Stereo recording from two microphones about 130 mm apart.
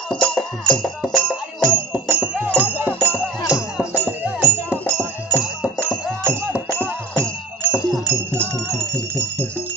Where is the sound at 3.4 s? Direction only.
25° left (ahead or behind).